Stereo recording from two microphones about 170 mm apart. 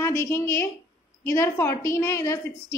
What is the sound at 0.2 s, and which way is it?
A woman's voice, 15° left (ahead or behind).